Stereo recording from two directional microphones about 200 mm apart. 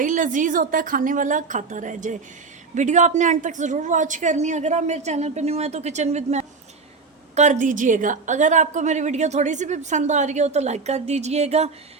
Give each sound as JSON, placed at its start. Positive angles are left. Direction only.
{"t": 0.0, "sound": "a woman's voice", "side_deg": -40}